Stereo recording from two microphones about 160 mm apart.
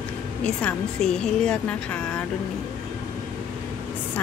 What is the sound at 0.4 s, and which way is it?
A woman's voice, 10° left (ahead or behind).